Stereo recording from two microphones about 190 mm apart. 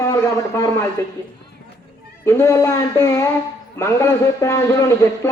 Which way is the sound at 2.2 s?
15° left (ahead or behind).